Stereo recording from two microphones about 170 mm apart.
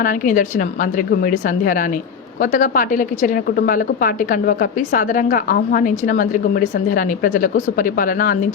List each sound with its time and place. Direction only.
0.0 s a woman's voice: 50° left (ahead or behind)